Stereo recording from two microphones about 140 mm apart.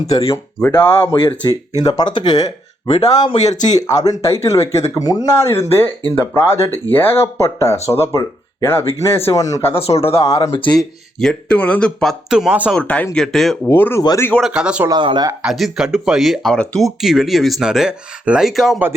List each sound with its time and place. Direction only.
0.8 s speech: 15° left (ahead or behind)
1.4 s speech: 25° left (ahead or behind)
6.7 s speech: 25° right (ahead or behind)
6.9 s speech: 15° left (ahead or behind)
9.7 s speech: 45° left (ahead or behind)
10.8 s speech: 5° left (ahead or behind)
12.3 s speech: 5° right (ahead or behind)
12.7 s speech: 10° left (ahead or behind)
13.7 s speech: 15° left (ahead or behind)
14.4 s speech: 5° right (ahead or behind)
14.8 s speech: 35° right (ahead or behind)
15.4 s speech: centre (ahead or behind)